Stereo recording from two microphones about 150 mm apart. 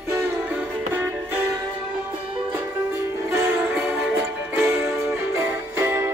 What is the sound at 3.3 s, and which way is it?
Music, 15° right (ahead or behind).